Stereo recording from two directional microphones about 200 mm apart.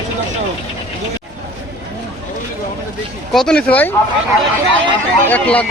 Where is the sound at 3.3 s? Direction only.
5° left (ahead or behind).